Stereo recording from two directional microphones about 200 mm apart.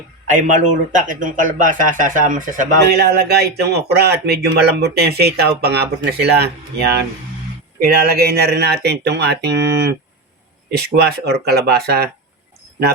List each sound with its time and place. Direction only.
0.3 s speech: 40° right (ahead or behind)
2.9 s speech: 55° right (ahead or behind)
7.8 s speech: 50° right (ahead or behind)